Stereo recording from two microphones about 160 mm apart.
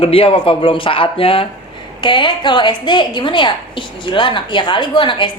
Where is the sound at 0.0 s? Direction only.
35° left (ahead or behind).